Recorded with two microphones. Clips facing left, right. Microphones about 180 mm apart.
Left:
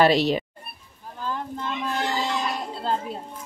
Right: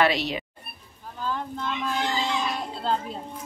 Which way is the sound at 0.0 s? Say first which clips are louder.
Left 5 dB; 35° left (ahead or behind).